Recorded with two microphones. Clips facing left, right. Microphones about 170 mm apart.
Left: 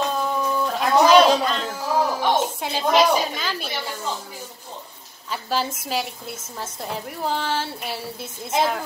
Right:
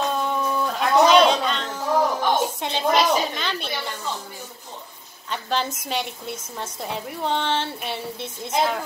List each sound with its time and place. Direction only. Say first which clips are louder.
0.2 s a sound: left 1 dB; centre (ahead or behind)
2.6 s a woman's voice: left 4 dB; 5° left (ahead or behind)
5.3 s a woman's voice: even; 5° left (ahead or behind)